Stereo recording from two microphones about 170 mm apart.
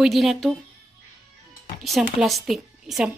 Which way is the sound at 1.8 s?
Centre (ahead or behind).